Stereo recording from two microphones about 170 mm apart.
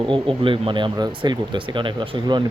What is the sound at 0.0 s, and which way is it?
Speech, 30° right (ahead or behind).